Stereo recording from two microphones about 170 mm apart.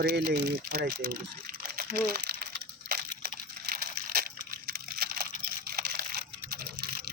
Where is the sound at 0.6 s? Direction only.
60° right (ahead or behind).